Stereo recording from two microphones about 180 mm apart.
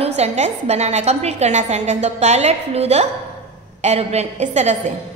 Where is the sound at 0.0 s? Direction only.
35° right (ahead or behind).